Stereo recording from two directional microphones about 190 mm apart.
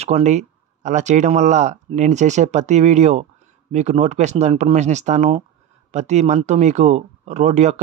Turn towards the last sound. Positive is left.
turn(degrees=-35)  # may be behind; listen again after turning